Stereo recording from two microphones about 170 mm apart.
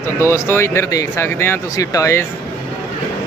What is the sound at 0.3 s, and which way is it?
Speech, 15° left (ahead or behind).